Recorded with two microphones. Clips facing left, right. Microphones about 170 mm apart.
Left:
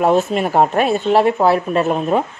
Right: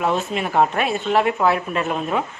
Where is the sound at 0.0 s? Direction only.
45° left (ahead or behind).